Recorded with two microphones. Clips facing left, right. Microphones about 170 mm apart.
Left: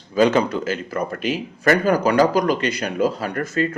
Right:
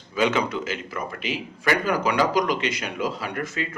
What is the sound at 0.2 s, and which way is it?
A man's voice, 35° left (ahead or behind).